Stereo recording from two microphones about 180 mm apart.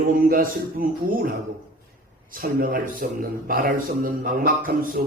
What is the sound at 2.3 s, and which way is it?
A man's voice, 50° right (ahead or behind).